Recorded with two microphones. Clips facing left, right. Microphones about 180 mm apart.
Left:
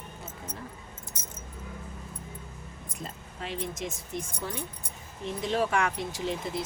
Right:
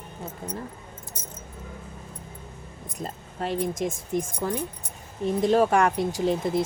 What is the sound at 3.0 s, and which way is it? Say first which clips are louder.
Speech: right 8 dB; 45° right (ahead or behind).